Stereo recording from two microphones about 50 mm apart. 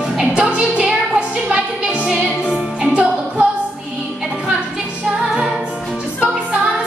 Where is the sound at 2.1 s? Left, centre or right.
Centre.